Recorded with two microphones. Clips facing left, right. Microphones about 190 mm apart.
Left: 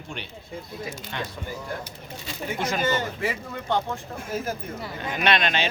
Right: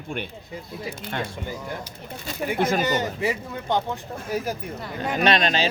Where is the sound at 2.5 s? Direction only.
50° right (ahead or behind).